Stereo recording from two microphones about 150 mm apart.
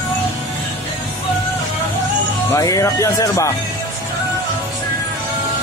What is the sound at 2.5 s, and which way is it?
Speech, 20° left (ahead or behind).